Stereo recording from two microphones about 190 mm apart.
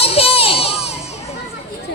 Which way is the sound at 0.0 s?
30° left (ahead or behind).